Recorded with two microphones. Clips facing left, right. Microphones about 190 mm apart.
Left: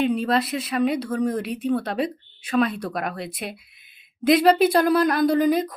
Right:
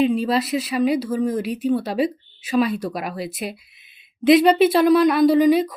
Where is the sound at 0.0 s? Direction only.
Centre (ahead or behind).